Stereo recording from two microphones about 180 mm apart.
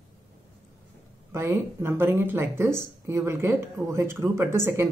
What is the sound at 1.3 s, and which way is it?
Speech, 15° right (ahead or behind).